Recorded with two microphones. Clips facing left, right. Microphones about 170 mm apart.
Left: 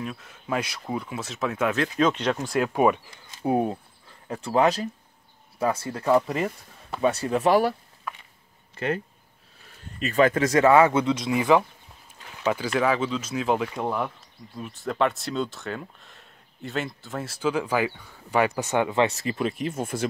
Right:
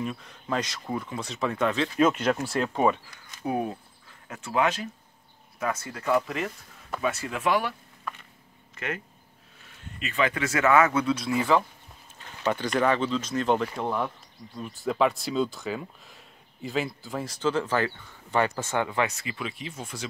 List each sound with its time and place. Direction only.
0.0 s speech: centre (ahead or behind)
2.0 s speech: 5° right (ahead or behind)
2.7 s speech: 15° left (ahead or behind)
3.1 s speech: 25° left (ahead or behind)
8.7 s speech: 30° left (ahead or behind); by 11.6 s 15° left (ahead or behind)
12.4 s speech: 5° left (ahead or behind)
19.0 s speech: 40° left (ahead or behind)